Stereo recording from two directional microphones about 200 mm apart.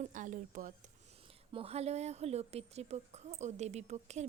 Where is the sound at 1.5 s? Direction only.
30° right (ahead or behind).